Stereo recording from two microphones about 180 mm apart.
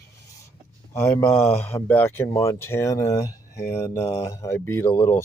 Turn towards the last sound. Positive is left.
turn(degrees=15)  # may be behind; listen again after turning